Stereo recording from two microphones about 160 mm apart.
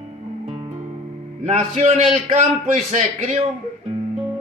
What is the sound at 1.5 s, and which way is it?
A man's voice, 45° right (ahead or behind).